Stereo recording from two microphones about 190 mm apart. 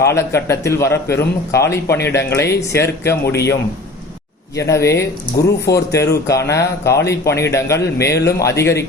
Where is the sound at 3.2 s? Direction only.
60° left (ahead or behind).